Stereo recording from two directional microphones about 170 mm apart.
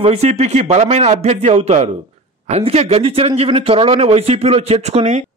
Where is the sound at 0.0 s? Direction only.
40° right (ahead or behind).